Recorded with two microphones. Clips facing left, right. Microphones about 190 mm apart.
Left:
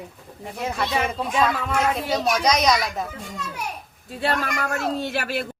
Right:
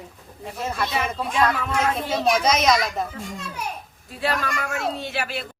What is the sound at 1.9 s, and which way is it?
A child's voice, centre (ahead or behind).